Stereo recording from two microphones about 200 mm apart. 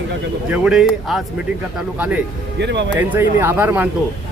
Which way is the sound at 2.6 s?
60° right (ahead or behind).